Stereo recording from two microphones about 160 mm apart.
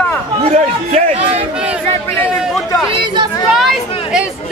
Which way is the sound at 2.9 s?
30° right (ahead or behind).